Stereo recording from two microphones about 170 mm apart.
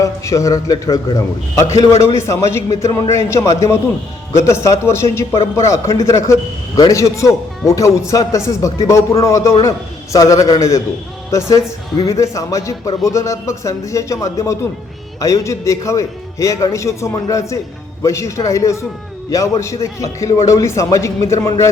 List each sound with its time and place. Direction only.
0.0 s a man's voice: 20° left (ahead or behind)